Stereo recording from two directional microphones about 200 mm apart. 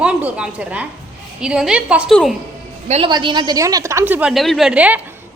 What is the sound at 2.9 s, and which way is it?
A woman's voice, 30° right (ahead or behind).